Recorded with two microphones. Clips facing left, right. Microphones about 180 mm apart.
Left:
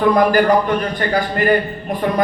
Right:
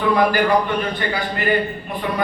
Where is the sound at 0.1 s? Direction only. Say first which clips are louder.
Left 2 dB; 45° left (ahead or behind).